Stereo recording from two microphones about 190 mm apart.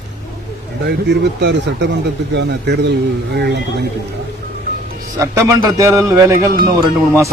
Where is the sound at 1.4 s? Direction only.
65° right (ahead or behind).